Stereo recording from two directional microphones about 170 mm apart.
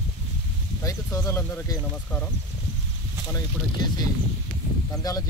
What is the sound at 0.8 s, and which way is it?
Speech, 15° left (ahead or behind).